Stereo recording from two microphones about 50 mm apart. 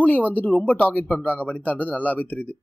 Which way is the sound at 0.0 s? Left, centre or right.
Left.